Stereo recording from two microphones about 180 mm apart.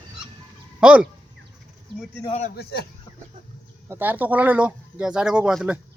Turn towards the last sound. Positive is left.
turn(degrees=-5)  # may be behind; listen again after turning